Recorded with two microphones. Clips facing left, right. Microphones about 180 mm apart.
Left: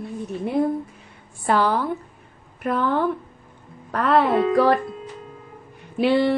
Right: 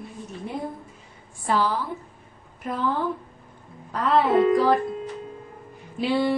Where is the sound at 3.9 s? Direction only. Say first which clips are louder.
Left 2 dB; 65° left (ahead or behind).